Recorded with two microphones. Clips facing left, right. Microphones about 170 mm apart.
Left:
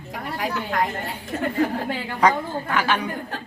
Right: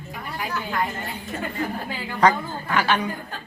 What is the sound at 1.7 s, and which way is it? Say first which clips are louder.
Speech: left 5 dB; 65° left (ahead or behind).